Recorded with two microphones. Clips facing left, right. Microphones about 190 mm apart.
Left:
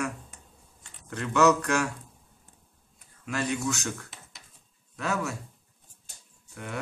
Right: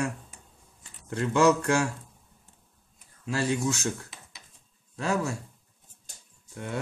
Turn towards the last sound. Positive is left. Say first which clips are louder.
# right 3 dB
turn(degrees=-30)  # may be behind; listen again after turning